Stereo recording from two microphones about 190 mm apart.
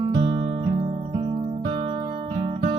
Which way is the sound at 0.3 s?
35° right (ahead or behind).